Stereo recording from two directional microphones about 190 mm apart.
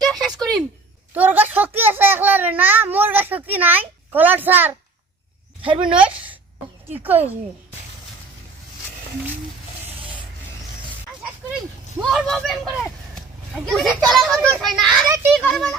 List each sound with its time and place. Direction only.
0.0 s a sound: centre (ahead or behind)
5.6 s speech: 25° right (ahead or behind)
5.9 s a woman's voice: 5° right (ahead or behind)
12.0 s a child's voice: centre (ahead or behind)